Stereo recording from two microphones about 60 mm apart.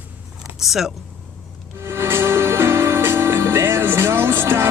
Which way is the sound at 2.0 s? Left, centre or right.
Right.